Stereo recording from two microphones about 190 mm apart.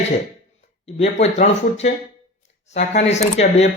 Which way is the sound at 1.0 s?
35° left (ahead or behind).